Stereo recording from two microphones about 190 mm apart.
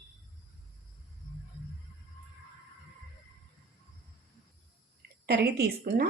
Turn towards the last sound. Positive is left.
turn(degrees=-55)  # may be behind; listen again after turning